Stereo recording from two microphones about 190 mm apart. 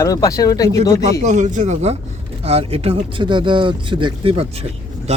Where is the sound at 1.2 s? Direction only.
40° right (ahead or behind).